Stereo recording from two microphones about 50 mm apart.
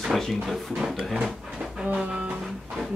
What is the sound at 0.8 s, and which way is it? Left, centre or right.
Speech, centre.